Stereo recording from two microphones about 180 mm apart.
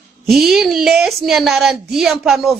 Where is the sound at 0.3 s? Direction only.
Centre (ahead or behind).